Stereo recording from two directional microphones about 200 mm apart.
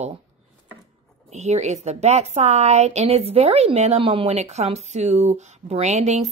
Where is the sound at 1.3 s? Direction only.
35° right (ahead or behind).